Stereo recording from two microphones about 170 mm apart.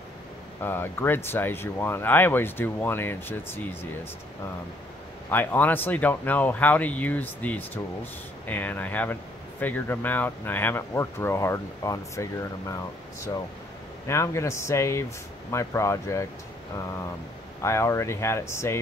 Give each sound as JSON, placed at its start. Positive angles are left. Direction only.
{"t": 0.6, "sound": "speech", "side_deg": 15}
{"t": 5.3, "sound": "speech", "side_deg": 10}
{"t": 14.0, "sound": "speech", "side_deg": 15}
{"t": 17.6, "sound": "speech", "side_deg": 15}